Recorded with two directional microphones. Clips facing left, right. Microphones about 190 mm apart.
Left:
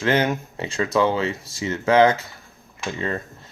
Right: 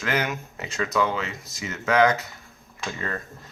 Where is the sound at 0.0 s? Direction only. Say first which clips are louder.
Left 6 dB; 30° left (ahead or behind).